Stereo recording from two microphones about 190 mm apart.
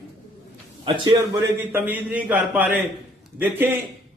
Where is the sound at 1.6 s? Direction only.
10° right (ahead or behind).